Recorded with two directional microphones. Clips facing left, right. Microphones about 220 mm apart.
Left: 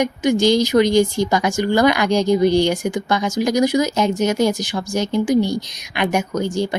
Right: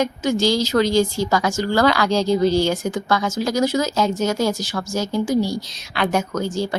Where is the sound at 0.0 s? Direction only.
15° left (ahead or behind).